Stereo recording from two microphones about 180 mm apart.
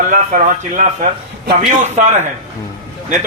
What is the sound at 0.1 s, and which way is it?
Speech, 45° right (ahead or behind).